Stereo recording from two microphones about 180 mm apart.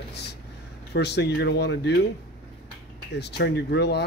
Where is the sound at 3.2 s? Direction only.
65° left (ahead or behind).